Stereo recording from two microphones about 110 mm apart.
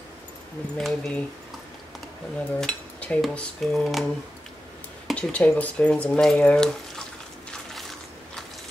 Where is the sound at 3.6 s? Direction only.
Centre (ahead or behind).